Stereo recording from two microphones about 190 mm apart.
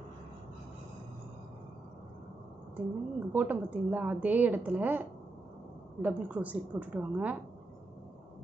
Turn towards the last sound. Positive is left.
turn(degrees=-5)  # may be behind; listen again after turning